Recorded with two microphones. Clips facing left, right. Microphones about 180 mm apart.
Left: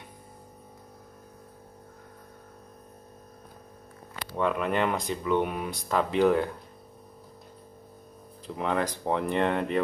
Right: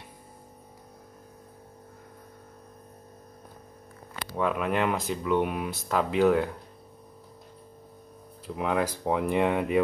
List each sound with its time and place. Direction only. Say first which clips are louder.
4.4 s speech: even; 5° right (ahead or behind)
8.5 s speech: right 1 dB; 5° right (ahead or behind)